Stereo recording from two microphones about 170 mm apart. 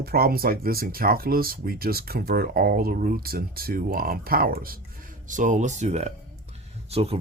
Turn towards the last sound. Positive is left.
turn(degrees=-35)  # may be behind; listen again after turning